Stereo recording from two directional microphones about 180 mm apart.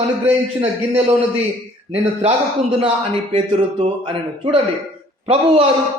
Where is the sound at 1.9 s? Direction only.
35° right (ahead or behind).